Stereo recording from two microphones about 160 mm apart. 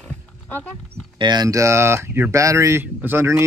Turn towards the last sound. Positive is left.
turn(degrees=-15)  # may be behind; listen again after turning